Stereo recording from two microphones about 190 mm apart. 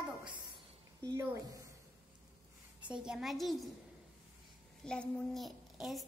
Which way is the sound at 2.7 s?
5° right (ahead or behind).